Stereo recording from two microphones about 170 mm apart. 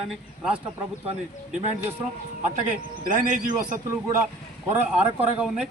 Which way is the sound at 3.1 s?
50° right (ahead or behind).